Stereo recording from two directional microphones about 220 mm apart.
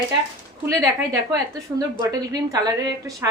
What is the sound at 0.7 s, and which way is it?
A woman's voice, 15° right (ahead or behind).